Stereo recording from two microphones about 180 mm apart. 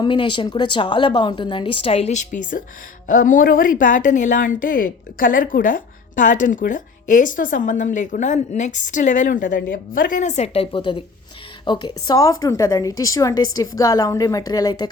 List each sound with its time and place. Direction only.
0.0 s a woman's voice: 25° left (ahead or behind)
2.4 s a woman's voice: 50° left (ahead or behind); by 14.8 s 20° left (ahead or behind)